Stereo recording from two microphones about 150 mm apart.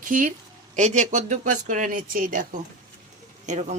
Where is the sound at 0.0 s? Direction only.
60° right (ahead or behind).